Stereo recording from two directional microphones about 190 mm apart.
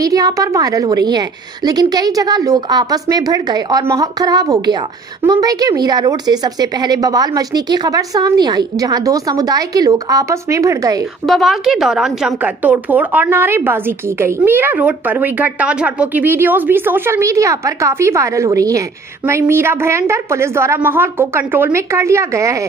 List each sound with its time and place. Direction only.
0.0 s a woman's voice: 20° right (ahead or behind)
11.2 s a woman's voice: centre (ahead or behind); by 22.6 s 15° right (ahead or behind)